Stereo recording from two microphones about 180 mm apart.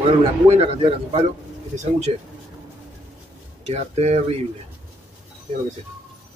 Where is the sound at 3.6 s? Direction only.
35° right (ahead or behind).